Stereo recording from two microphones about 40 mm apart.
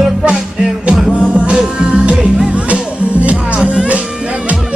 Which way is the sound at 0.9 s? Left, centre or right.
Centre.